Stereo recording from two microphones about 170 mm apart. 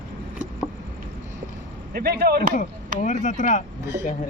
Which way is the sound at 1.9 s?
65° right (ahead or behind).